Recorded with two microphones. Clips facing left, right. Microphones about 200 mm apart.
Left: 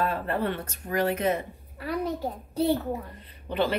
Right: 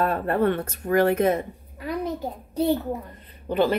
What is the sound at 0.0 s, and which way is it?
Speech, 55° right (ahead or behind).